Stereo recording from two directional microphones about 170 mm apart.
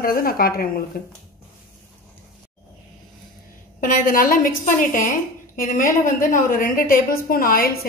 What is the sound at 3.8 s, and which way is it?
A woman's voice, 50° left (ahead or behind).